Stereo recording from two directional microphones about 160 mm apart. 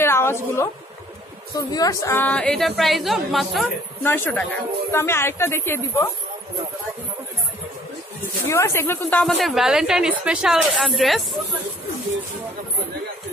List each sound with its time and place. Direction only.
0.0 s a sound: 15° left (ahead or behind)
1.5 s a woman's voice: 25° left (ahead or behind); by 3.6 s centre (ahead or behind)
4.0 s a woman's voice: 10° left (ahead or behind)
8.5 s a woman's voice: 15° left (ahead or behind)
9.2 s a woman's voice: centre (ahead or behind)